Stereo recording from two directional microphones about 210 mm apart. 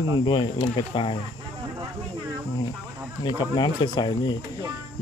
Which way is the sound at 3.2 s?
20° left (ahead or behind).